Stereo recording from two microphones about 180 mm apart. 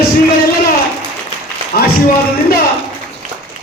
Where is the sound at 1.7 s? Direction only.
55° left (ahead or behind).